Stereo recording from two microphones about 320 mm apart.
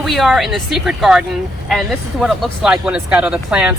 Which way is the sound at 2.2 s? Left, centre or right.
Centre.